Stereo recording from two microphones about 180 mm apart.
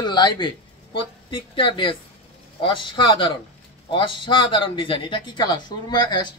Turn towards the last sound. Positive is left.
turn(degrees=25)  # may be behind; listen again after turning